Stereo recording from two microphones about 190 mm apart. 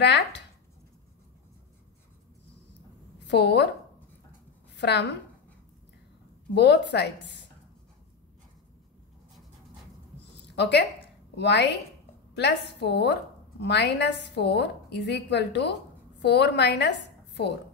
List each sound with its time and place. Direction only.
0.0 s speech: 60° left (ahead or behind)
3.3 s speech: 65° left (ahead or behind)
4.7 s a woman's voice: 65° left (ahead or behind)
6.5 s speech: 65° left (ahead or behind)
10.5 s a woman's voice: 60° left (ahead or behind)